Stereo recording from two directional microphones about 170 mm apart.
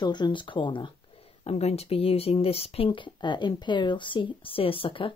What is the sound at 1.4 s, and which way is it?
Speech, 40° left (ahead or behind).